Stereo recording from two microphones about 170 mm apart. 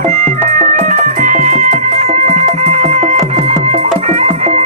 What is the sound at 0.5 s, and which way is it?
Music, 50° right (ahead or behind).